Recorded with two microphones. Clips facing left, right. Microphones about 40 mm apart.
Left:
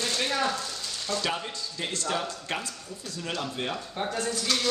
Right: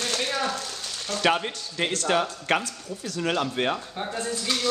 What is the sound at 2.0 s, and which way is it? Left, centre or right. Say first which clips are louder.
Speech: right 7 dB; right.